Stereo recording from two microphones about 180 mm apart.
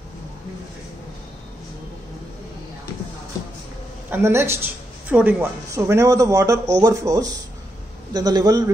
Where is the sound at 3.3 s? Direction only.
20° left (ahead or behind).